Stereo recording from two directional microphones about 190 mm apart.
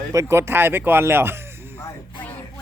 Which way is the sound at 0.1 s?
15° right (ahead or behind).